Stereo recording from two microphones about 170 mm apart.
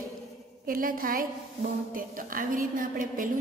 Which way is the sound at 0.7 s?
55° right (ahead or behind).